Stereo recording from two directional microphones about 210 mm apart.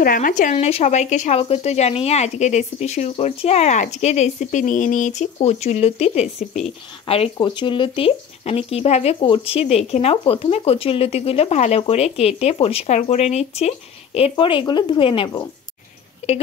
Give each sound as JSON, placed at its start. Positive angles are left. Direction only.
{"t": 0.0, "sound": "speech", "side_deg": 40}